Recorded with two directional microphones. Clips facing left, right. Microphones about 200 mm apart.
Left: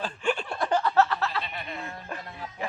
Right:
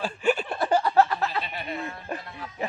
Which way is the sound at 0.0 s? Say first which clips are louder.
Right 4 dB; 5° right (ahead or behind).